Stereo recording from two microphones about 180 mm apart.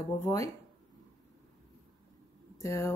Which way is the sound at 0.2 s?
15° left (ahead or behind).